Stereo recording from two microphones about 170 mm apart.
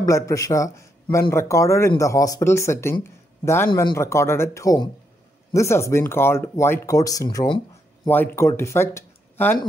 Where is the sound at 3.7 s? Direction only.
25° left (ahead or behind).